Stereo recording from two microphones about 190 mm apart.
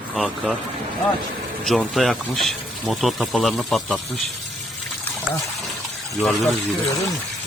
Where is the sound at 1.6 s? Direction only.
Centre (ahead or behind).